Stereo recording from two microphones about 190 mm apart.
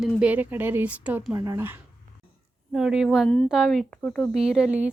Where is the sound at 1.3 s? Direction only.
20° right (ahead or behind).